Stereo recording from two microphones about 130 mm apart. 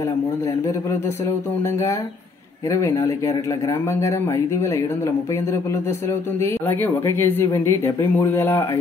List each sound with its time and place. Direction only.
1.2 s speech: 20° left (ahead or behind)